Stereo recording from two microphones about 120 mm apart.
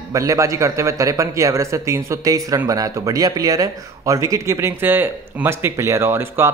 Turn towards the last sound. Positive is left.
turn(degrees=-20)  # may be behind; listen again after turning